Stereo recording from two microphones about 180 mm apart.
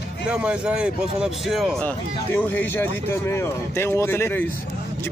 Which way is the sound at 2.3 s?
10° left (ahead or behind).